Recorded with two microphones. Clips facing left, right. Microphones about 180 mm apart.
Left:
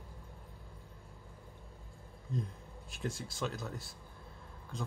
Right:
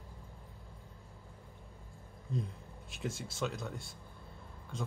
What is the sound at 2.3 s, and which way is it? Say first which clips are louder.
Speech: right 1 dB; centre (ahead or behind).